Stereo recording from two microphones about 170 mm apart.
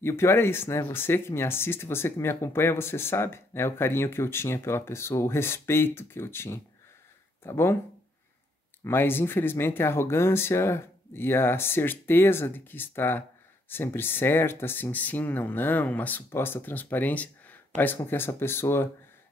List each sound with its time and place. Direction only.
0.0 s speech: 15° left (ahead or behind)
8.8 s speech: 15° left (ahead or behind)